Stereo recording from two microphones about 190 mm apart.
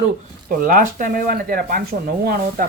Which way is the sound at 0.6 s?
45° right (ahead or behind).